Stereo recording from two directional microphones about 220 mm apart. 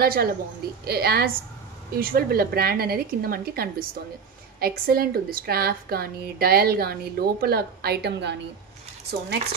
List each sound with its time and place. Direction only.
0.0 s a woman's voice: 45° right (ahead or behind)